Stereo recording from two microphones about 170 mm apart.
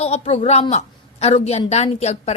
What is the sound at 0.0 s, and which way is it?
A woman's voice, 40° left (ahead or behind).